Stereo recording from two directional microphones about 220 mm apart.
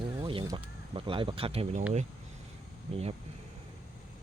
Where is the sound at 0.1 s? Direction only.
20° right (ahead or behind).